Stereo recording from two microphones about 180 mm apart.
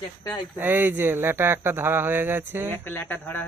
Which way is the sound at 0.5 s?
10° right (ahead or behind).